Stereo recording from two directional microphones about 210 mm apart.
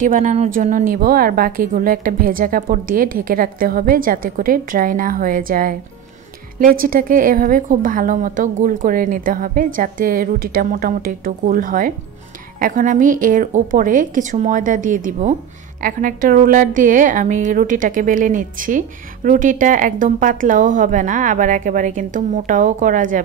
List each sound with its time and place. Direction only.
0.0 s a woman's voice: 35° right (ahead or behind)